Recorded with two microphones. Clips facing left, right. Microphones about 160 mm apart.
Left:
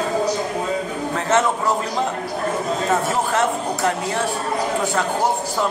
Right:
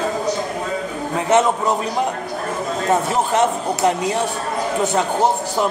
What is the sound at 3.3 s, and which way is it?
Speech, 20° right (ahead or behind).